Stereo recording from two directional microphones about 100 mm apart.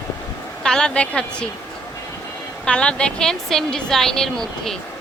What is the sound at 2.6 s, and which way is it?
A woman's voice, 10° left (ahead or behind).